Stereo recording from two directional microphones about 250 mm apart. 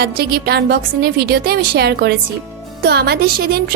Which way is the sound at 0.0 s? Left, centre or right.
Right.